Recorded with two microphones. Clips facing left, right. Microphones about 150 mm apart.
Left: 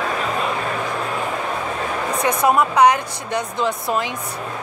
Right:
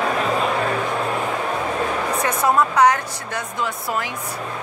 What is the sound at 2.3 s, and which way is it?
Speech, 15° left (ahead or behind).